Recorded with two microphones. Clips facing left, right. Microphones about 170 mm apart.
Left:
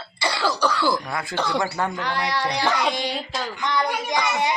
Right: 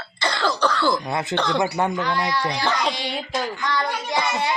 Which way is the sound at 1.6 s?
20° right (ahead or behind).